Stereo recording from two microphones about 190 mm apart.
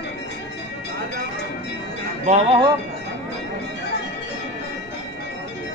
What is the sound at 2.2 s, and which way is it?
Speech, 35° right (ahead or behind).